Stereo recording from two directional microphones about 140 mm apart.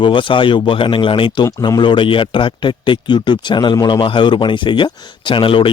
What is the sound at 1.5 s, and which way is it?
Speech, 30° left (ahead or behind).